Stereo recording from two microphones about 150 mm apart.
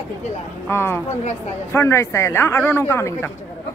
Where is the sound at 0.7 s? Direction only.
15° left (ahead or behind).